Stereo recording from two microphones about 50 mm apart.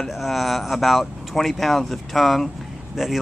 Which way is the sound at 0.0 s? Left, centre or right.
Centre.